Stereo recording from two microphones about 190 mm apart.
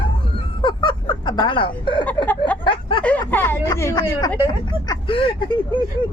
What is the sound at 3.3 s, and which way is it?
Speech, 10° left (ahead or behind).